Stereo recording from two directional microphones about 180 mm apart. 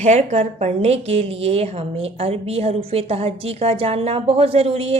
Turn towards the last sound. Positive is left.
turn(degrees=-35)  # may be behind; listen again after turning